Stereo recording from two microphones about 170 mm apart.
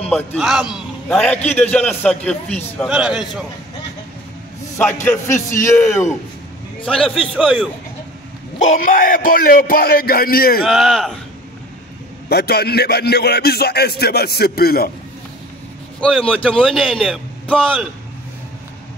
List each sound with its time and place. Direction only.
0.0 s a man's voice: 5° left (ahead or behind)
2.9 s speech: 5° right (ahead or behind)
4.7 s a man's voice: 10° left (ahead or behind)
8.5 s speech: 50° left (ahead or behind)
10.6 s speech: centre (ahead or behind)
12.3 s music: 70° left (ahead or behind)
16.0 s a man's voice: 5° left (ahead or behind)